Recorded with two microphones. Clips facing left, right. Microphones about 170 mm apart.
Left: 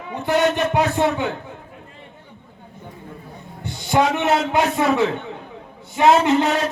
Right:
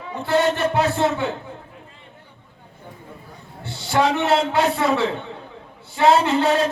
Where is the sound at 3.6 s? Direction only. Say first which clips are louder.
Left 1 dB; 15° left (ahead or behind).